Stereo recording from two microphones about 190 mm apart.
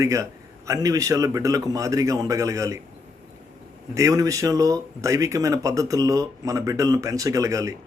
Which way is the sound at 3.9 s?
15° right (ahead or behind).